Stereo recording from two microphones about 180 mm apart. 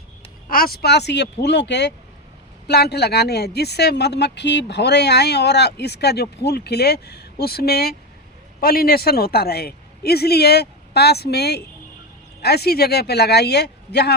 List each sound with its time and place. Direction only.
0.4 s speech: 55° left (ahead or behind)